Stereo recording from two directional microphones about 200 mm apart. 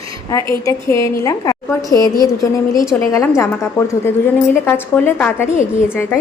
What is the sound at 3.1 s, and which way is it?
A woman's voice, 15° left (ahead or behind).